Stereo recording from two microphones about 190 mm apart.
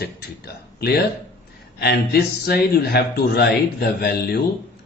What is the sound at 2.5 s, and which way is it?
Speech, 55° left (ahead or behind).